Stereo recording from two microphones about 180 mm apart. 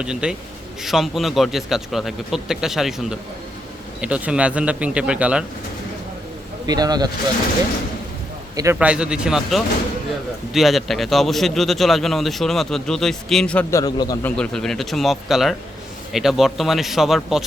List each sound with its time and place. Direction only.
0.0 s a man's voice: 5° right (ahead or behind)
6.7 s speech: 20° right (ahead or behind)
8.5 s a man's voice: 15° right (ahead or behind); by 14.3 s 20° left (ahead or behind)
14.3 s a man's voice: 5° left (ahead or behind)